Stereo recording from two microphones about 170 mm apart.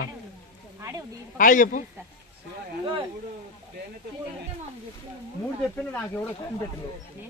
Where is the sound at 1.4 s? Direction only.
50° left (ahead or behind).